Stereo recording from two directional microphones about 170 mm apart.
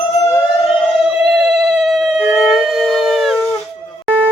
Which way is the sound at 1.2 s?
5° right (ahead or behind).